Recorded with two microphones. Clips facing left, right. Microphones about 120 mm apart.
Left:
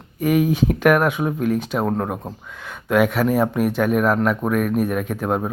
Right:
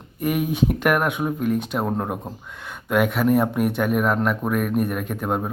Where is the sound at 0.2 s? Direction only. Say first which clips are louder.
Left 4 dB; centre (ahead or behind).